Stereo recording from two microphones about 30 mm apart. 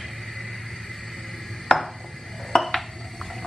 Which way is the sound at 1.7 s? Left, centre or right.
Centre.